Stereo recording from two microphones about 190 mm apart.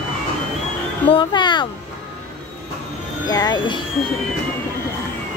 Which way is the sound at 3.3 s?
20° left (ahead or behind).